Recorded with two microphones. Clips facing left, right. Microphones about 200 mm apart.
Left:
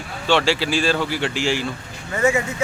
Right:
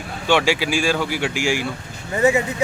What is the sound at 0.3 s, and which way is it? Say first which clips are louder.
A man's voice: right 1 dB; 15° right (ahead or behind).